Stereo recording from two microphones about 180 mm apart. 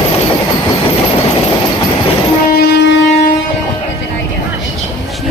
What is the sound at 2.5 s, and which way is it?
Music, 65° left (ahead or behind).